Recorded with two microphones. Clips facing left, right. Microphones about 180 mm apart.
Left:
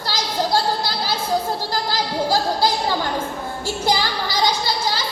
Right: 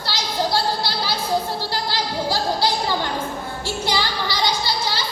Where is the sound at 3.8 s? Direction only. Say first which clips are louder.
Left 3 dB; 45° left (ahead or behind).